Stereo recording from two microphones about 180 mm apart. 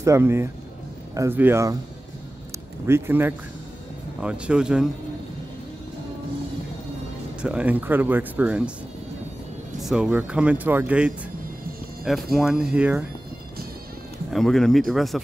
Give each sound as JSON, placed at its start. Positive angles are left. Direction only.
{"t": 0.0, "sound": "speech", "side_deg": -15}
{"t": 2.9, "sound": "speech", "side_deg": -10}
{"t": 7.4, "sound": "speech", "side_deg": -5}
{"t": 9.8, "sound": "speech", "side_deg": -5}
{"t": 14.3, "sound": "speech", "side_deg": 0}